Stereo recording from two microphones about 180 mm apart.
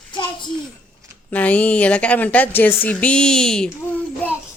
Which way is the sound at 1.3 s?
10° left (ahead or behind).